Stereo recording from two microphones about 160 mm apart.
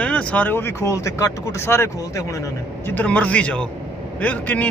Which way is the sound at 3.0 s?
10° left (ahead or behind).